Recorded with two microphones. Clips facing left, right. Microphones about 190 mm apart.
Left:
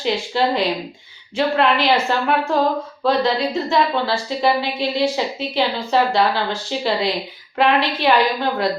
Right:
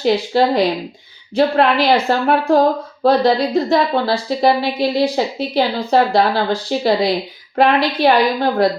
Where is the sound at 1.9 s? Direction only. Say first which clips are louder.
Right 3 dB; 40° right (ahead or behind).